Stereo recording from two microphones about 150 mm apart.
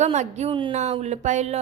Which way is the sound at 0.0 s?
50° right (ahead or behind).